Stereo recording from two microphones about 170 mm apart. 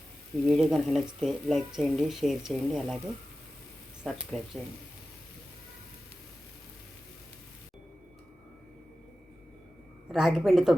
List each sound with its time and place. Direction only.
0.4 s speech: centre (ahead or behind)
4.0 s speech: centre (ahead or behind)
10.1 s speech: centre (ahead or behind)